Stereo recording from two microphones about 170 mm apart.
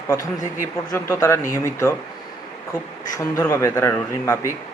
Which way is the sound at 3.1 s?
15° left (ahead or behind).